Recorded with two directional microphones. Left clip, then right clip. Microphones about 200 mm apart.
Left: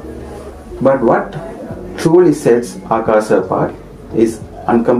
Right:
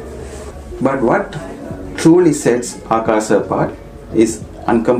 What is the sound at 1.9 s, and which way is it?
Speech, 40° right (ahead or behind).